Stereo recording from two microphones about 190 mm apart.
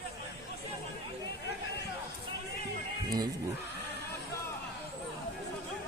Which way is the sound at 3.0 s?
20° right (ahead or behind).